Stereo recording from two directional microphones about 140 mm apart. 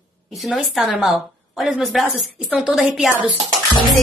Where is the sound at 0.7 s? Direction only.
Centre (ahead or behind).